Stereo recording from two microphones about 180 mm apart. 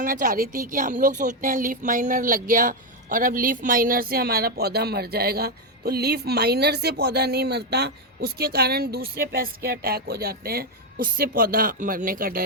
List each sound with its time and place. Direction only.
0.0 s a woman's voice: 50° right (ahead or behind)